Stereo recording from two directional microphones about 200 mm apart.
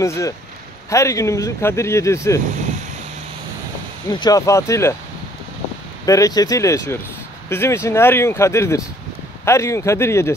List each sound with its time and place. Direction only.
0.0 s speech: 15° left (ahead or behind)
4.1 s speech: 20° left (ahead or behind)
6.0 s speech: 15° left (ahead or behind)